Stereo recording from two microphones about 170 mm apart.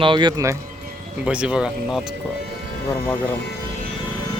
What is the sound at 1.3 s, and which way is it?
Speech, 5° right (ahead or behind).